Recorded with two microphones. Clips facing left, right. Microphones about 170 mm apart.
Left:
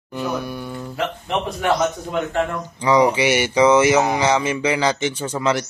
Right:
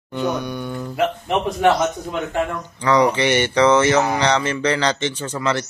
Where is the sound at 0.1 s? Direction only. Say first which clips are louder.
Right 2 dB; 5° left (ahead or behind).